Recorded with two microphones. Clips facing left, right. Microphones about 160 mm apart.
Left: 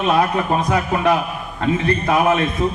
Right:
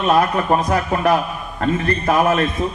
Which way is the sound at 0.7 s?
40° right (ahead or behind).